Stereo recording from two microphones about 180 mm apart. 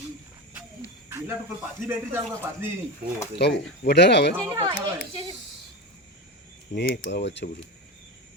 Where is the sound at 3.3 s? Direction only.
65° left (ahead or behind).